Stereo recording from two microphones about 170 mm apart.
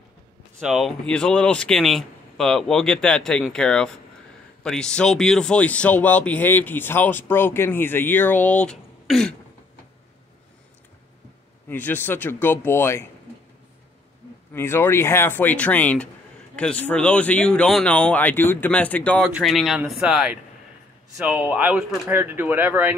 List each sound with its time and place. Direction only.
0.6 s speech: centre (ahead or behind)
11.7 s speech: 10° left (ahead or behind)
14.5 s speech: 15° left (ahead or behind)
19.2 s speech: centre (ahead or behind)